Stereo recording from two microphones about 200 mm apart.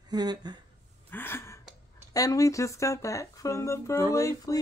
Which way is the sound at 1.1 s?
10° left (ahead or behind).